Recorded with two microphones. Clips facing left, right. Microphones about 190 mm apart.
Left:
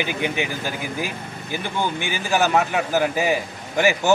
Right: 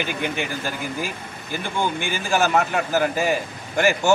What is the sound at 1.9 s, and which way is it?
Speech, 50° right (ahead or behind).